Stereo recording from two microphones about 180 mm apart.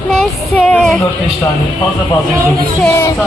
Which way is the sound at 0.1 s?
5° left (ahead or behind).